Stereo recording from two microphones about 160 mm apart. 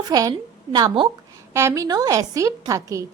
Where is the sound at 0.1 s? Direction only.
20° right (ahead or behind).